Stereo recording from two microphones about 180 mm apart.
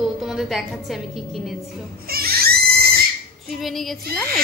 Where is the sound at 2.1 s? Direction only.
55° right (ahead or behind).